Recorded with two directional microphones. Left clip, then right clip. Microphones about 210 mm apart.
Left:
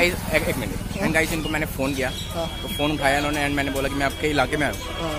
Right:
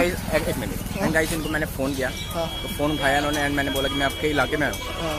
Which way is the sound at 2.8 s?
10° left (ahead or behind).